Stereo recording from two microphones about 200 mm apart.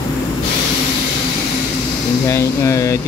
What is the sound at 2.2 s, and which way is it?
Music, 15° left (ahead or behind).